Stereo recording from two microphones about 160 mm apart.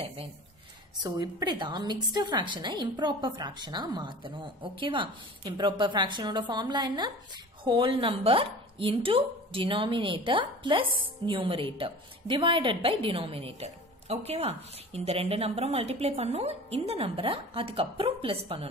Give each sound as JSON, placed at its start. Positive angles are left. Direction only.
{"t": 1.0, "sound": "a woman's voice", "side_deg": -25}